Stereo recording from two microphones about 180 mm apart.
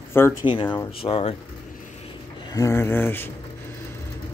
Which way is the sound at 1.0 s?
30° left (ahead or behind).